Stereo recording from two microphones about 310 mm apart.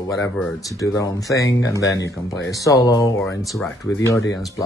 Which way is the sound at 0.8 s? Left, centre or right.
Centre.